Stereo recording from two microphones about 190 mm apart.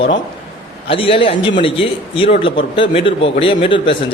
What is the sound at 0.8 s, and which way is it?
Speech, 30° left (ahead or behind).